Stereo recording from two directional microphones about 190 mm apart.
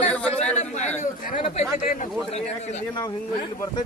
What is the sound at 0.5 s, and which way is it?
Speech, 35° left (ahead or behind).